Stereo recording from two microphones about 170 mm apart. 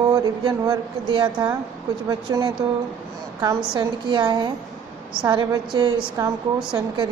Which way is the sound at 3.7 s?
25° right (ahead or behind).